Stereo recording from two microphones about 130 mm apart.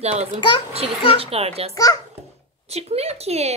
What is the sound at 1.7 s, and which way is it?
Speech, 30° left (ahead or behind).